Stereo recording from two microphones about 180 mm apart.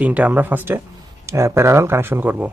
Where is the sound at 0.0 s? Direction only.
10° right (ahead or behind).